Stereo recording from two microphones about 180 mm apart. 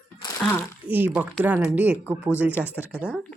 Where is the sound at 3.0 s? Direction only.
Centre (ahead or behind).